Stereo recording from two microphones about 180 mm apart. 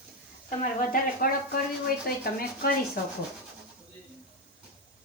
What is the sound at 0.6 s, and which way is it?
Speech, 50° left (ahead or behind).